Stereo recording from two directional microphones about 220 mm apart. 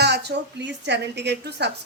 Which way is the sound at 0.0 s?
50° right (ahead or behind).